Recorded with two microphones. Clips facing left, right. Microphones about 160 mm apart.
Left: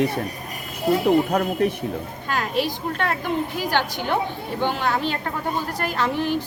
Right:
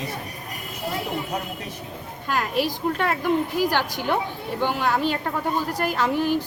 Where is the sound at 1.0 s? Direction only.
60° left (ahead or behind).